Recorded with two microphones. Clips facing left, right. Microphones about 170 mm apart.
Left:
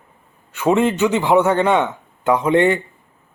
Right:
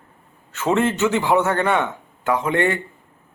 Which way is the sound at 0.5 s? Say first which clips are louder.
Left 3 dB; 15° left (ahead or behind).